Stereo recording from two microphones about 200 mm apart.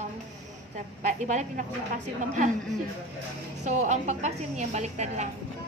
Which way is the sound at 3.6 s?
35° right (ahead or behind).